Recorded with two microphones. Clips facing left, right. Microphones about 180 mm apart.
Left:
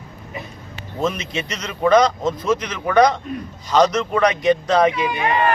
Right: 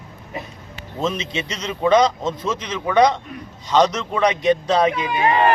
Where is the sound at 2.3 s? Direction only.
25° right (ahead or behind).